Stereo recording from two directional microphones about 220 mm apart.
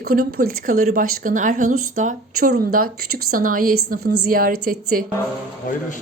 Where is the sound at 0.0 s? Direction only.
45° right (ahead or behind).